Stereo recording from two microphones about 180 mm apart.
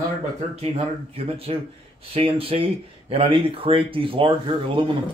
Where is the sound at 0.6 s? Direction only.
35° right (ahead or behind).